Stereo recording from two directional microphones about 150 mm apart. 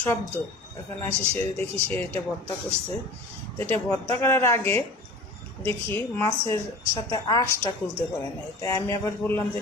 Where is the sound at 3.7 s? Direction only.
10° left (ahead or behind).